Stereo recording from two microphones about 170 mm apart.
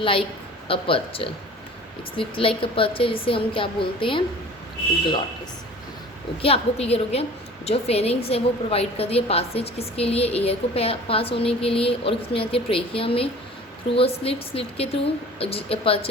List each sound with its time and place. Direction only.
0.0 s a woman's voice: 30° left (ahead or behind)
6.4 s a woman's voice: 35° left (ahead or behind)